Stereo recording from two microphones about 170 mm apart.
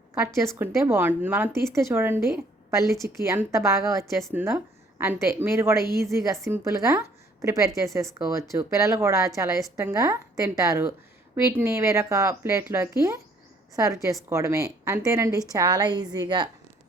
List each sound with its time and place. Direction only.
0.3 s a woman's voice: 15° right (ahead or behind)